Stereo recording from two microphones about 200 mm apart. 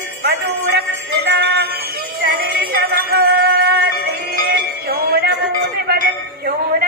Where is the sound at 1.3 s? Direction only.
60° right (ahead or behind).